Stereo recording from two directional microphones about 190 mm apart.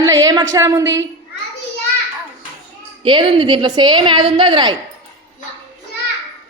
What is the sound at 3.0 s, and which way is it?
A woman's voice, 25° right (ahead or behind).